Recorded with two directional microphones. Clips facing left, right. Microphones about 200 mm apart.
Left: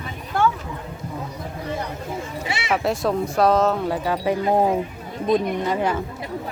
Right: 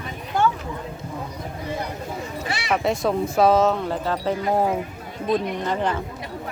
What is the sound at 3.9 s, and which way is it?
A woman's voice, 10° left (ahead or behind).